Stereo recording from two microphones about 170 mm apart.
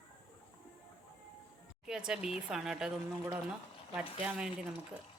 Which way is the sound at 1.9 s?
5° right (ahead or behind).